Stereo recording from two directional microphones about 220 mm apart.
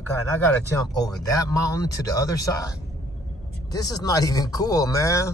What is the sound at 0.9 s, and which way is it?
Speech, 15° left (ahead or behind).